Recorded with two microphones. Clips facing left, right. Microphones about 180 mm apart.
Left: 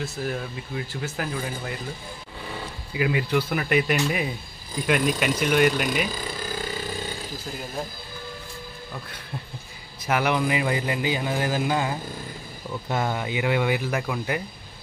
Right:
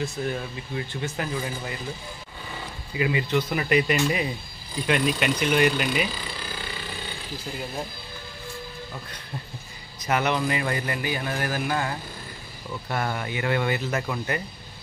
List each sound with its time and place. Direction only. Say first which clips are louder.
0.0 s speech: right 1 dB; centre (ahead or behind)
2.9 s speech: left 1 dB; centre (ahead or behind)
6.0 s a sound: left 3 dB; 45° left (ahead or behind)
10.0 s a man's voice: left 1 dB; 5° left (ahead or behind)